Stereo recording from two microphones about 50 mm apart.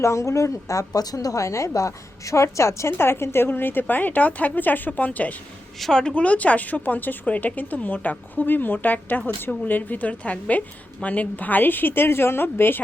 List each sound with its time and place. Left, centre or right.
0.0 s a woman's voice: left
5.8 s speech: centre
6.1 s a woman's voice: left